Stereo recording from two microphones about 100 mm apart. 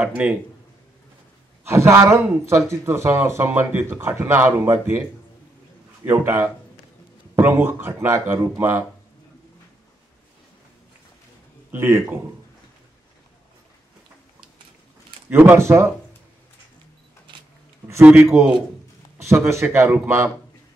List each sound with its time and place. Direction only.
0.0 s speech: 15° right (ahead or behind)
1.6 s a man's voice: 25° right (ahead or behind)
6.0 s a man's voice: 20° right (ahead or behind)
11.7 s a man's voice: 20° right (ahead or behind)
15.2 s a man's voice: 20° right (ahead or behind)
18.0 s a man's voice: 20° right (ahead or behind)